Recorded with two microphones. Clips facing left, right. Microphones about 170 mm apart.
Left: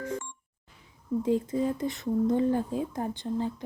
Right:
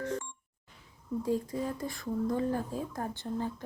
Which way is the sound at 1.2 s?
20° left (ahead or behind).